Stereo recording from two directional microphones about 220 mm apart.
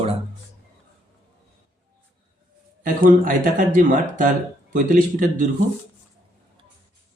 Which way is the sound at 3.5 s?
35° right (ahead or behind).